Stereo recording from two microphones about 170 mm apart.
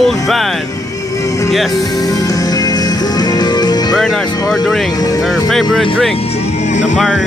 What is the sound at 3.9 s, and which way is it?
Speech, centre (ahead or behind).